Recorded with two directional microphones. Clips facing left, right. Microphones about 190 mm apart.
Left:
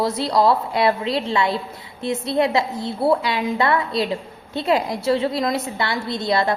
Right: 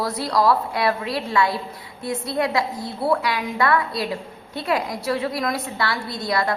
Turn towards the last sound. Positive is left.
turn(degrees=25)  # may be behind; listen again after turning